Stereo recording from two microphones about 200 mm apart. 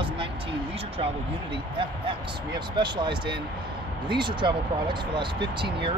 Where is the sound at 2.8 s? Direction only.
25° right (ahead or behind).